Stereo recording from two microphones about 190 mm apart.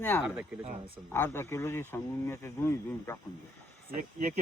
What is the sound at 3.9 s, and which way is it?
Speech, 40° right (ahead or behind).